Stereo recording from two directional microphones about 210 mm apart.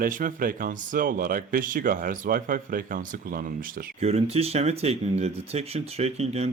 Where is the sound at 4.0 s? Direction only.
30° right (ahead or behind).